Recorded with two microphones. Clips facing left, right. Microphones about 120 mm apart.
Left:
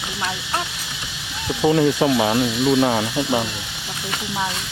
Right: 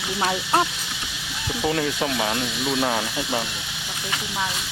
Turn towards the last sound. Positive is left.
turn(degrees=5)  # may be behind; listen again after turning